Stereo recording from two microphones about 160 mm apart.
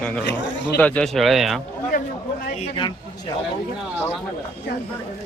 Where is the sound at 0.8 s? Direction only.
5° left (ahead or behind).